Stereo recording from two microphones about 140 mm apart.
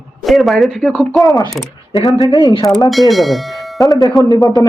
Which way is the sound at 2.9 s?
Centre (ahead or behind).